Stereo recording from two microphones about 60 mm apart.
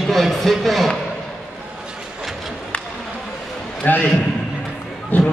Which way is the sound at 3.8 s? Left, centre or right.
Left.